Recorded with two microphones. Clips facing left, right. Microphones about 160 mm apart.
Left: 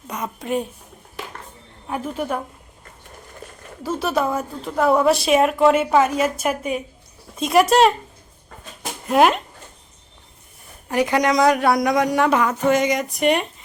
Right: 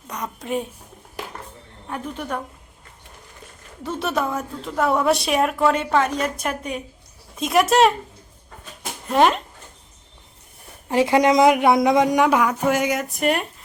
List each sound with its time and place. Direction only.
0.1 s a woman's voice: 5° left (ahead or behind)
1.9 s a woman's voice: 10° left (ahead or behind)
3.8 s a woman's voice: centre (ahead or behind)
9.0 s a woman's voice: 5° left (ahead or behind)
10.8 s a man's voice: 25° right (ahead or behind); by 13.5 s centre (ahead or behind)